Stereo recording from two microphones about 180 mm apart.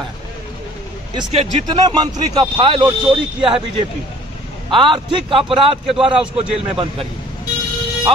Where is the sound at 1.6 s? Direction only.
25° right (ahead or behind).